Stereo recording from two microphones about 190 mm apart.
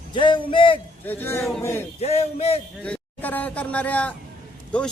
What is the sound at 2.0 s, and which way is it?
Speech, 30° left (ahead or behind).